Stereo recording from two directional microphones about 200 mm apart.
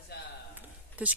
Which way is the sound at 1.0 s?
5° right (ahead or behind).